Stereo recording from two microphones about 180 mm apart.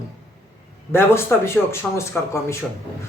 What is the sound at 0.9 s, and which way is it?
Speech, 10° left (ahead or behind).